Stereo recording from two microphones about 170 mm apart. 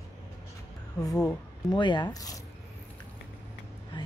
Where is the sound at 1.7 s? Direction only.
25° left (ahead or behind).